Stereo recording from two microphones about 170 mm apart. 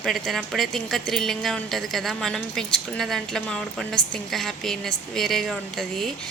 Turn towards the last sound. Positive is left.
turn(degrees=0)  # may be behind; listen again after turning